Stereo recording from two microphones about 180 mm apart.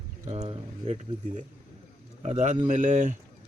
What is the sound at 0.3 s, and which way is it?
Speech, 35° right (ahead or behind).